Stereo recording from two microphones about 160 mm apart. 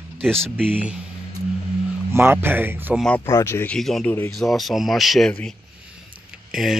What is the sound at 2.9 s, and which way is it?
Speech, 5° left (ahead or behind).